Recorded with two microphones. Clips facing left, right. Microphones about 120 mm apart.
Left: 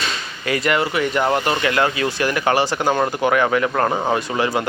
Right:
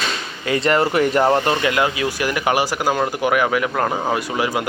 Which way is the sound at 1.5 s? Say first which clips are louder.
Even; 20° right (ahead or behind).